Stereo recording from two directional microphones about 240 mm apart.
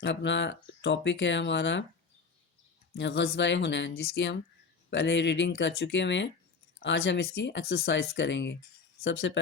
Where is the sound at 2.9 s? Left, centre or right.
Left.